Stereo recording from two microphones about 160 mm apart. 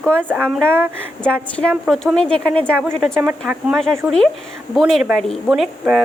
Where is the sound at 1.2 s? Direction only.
5° left (ahead or behind).